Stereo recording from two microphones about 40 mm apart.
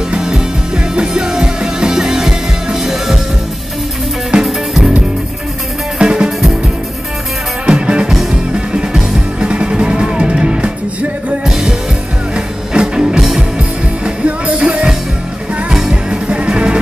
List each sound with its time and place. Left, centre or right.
0.1 s music: centre
4.4 s music: centre
5.9 s music: right
7.6 s music: right
11.4 s music: centre
12.4 s music: right
14.0 s music: right
15.7 s music: centre